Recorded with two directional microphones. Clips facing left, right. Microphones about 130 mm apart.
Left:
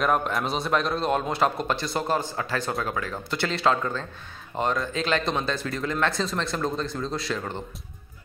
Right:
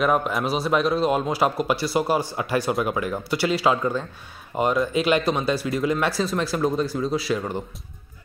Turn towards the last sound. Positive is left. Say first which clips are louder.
# right 5 dB
turn(degrees=-10)  # may be behind; listen again after turning